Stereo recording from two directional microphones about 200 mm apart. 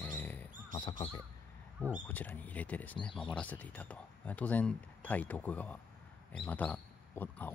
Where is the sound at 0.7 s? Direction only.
25° left (ahead or behind).